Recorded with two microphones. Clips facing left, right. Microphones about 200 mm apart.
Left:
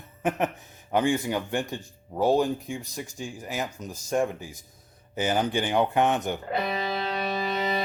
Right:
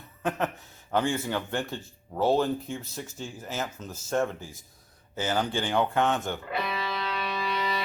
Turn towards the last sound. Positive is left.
turn(degrees=45)  # may be behind; listen again after turning